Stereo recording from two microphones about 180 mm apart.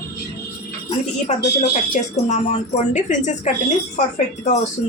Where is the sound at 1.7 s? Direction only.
40° left (ahead or behind).